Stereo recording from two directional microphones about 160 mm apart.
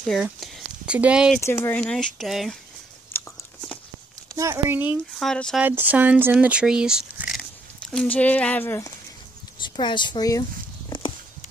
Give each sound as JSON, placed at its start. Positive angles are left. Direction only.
{"t": 0.2, "sound": "a sound", "side_deg": -10}
{"t": 1.4, "sound": "speech", "side_deg": 15}
{"t": 1.8, "sound": "speech", "side_deg": 5}
{"t": 3.1, "sound": "a sound", "side_deg": 15}
{"t": 4.4, "sound": "speech", "side_deg": -15}
{"t": 5.1, "sound": "speech", "side_deg": 0}
{"t": 5.6, "sound": "speech", "side_deg": -10}
{"t": 9.6, "sound": "speech", "side_deg": 30}
{"t": 10.9, "sound": "clip-clop", "side_deg": 30}